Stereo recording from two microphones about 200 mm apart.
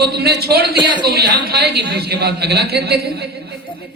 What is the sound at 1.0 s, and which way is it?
A man's voice, 55° right (ahead or behind).